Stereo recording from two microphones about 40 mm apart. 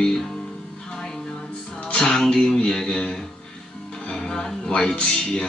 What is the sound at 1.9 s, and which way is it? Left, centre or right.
Speech, centre.